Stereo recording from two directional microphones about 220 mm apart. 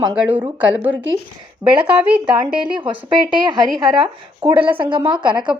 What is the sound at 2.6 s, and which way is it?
Speech, 20° right (ahead or behind).